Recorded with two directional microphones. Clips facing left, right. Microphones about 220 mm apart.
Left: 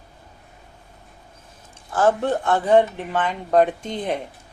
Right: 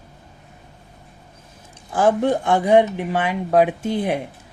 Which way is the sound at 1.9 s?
15° right (ahead or behind).